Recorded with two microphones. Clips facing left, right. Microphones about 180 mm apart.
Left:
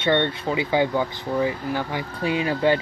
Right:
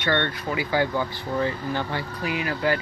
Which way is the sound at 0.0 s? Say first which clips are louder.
Left 4 dB; 25° left (ahead or behind).